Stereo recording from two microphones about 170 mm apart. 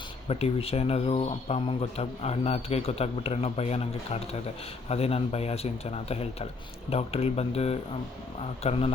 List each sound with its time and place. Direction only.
0.3 s speech: 35° left (ahead or behind)